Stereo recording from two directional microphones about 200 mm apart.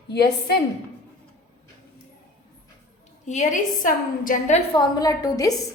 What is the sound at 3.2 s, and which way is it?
A woman's voice, 35° left (ahead or behind).